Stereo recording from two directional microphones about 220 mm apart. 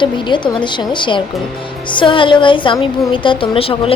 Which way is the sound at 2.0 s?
20° left (ahead or behind).